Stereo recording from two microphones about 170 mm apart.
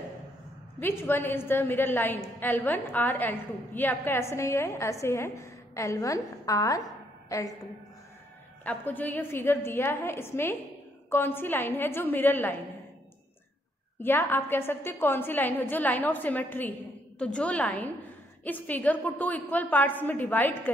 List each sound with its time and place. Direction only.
0.7 s a woman's voice: 10° left (ahead or behind)
8.6 s a woman's voice: 10° left (ahead or behind)
14.0 s a woman's voice: 10° left (ahead or behind)